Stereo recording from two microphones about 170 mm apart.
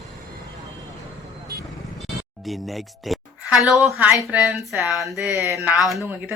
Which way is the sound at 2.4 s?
Centre (ahead or behind).